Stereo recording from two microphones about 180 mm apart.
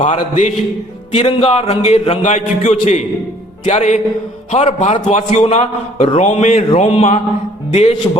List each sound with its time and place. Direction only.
0.0 s a man's voice: 40° left (ahead or behind)